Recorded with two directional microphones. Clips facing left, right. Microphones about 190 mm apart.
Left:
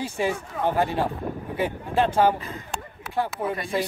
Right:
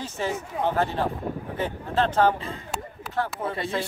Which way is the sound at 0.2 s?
15° left (ahead or behind).